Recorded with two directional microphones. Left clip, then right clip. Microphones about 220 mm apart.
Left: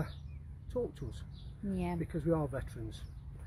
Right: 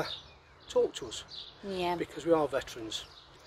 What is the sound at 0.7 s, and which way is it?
Speech, centre (ahead or behind).